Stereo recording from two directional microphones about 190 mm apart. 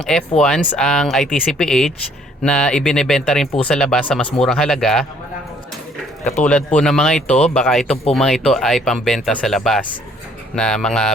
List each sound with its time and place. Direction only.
0.0 s speech: 5° left (ahead or behind)
6.4 s speech: 5° left (ahead or behind)